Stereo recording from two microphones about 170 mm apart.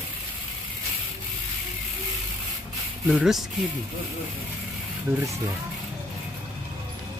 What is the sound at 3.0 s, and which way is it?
Speech, 5° right (ahead or behind).